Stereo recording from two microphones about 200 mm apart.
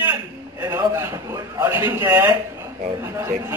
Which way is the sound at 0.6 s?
15° right (ahead or behind).